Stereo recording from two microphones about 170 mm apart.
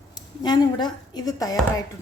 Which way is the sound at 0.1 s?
25° left (ahead or behind).